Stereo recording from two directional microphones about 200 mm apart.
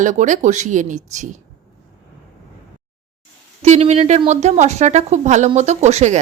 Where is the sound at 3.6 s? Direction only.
35° right (ahead or behind).